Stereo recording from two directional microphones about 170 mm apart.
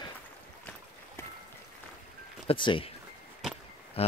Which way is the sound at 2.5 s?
30° left (ahead or behind).